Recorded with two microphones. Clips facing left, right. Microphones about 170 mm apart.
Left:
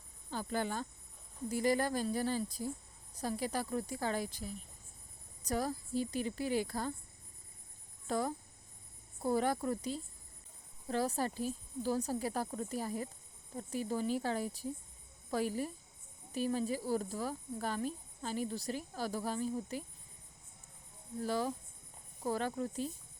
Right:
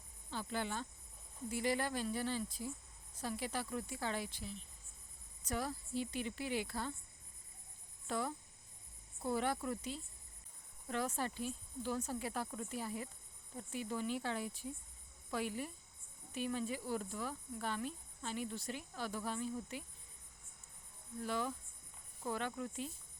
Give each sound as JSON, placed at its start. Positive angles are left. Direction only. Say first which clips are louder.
{"t": 0.3, "sound": "speech", "louder": "left 4 dB", "side_deg": 45}
{"t": 8.0, "sound": "speech", "louder": "left 5 dB", "side_deg": 40}
{"t": 21.2, "sound": "speech", "louder": "left 4 dB", "side_deg": 35}